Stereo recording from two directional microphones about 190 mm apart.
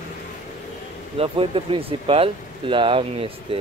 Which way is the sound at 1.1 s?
30° right (ahead or behind).